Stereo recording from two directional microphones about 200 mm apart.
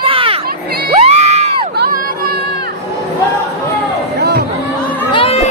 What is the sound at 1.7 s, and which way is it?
Crowd, 50° right (ahead or behind).